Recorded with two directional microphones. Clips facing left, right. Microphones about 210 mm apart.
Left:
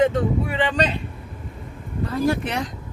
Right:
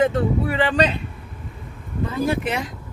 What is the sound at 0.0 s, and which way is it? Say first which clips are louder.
Speech: even; 5° right (ahead or behind).